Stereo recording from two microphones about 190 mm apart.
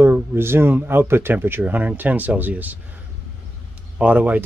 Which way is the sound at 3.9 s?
5° right (ahead or behind).